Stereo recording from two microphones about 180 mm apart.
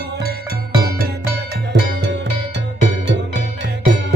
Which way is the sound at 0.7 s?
60° right (ahead or behind).